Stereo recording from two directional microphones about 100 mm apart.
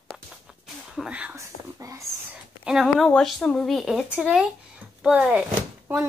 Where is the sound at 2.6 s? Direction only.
5° right (ahead or behind).